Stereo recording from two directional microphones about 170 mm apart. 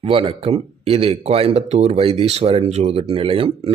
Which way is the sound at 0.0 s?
30° right (ahead or behind).